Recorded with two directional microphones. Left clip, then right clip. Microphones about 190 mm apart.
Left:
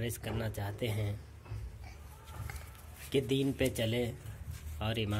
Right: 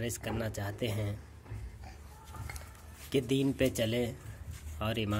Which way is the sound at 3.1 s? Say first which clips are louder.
Right 1 dB; 5° right (ahead or behind).